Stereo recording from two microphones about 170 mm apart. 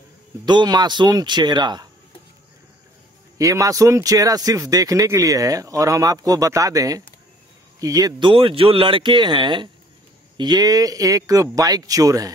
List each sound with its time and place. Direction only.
0.5 s speech: 25° right (ahead or behind)
3.3 s speech: 20° right (ahead or behind)